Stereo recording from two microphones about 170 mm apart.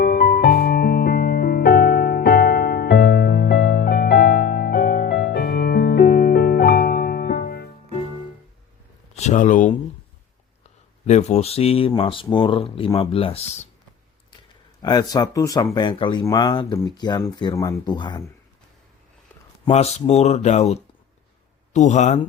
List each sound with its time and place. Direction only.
0.0 s music: 65° left (ahead or behind)
9.1 s speech: 40° left (ahead or behind)
11.0 s speech: 40° left (ahead or behind)
14.8 s speech: 25° left (ahead or behind)
19.6 s speech: 40° left (ahead or behind)